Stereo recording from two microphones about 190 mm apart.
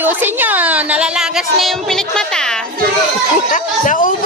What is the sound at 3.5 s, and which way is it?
Speech, 45° left (ahead or behind).